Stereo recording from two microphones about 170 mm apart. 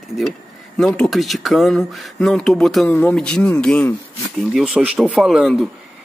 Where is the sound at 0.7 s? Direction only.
5° left (ahead or behind).